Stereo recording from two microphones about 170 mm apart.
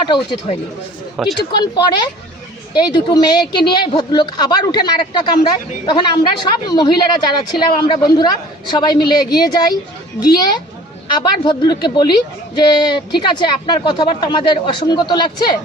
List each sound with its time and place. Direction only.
1.1 s speech: 5° right (ahead or behind)
1.5 s speech: 25° left (ahead or behind)